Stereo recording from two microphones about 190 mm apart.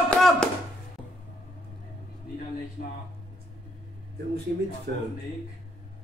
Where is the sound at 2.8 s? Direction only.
50° left (ahead or behind).